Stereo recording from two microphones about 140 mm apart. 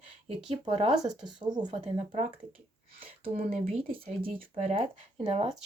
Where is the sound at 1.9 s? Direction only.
50° right (ahead or behind).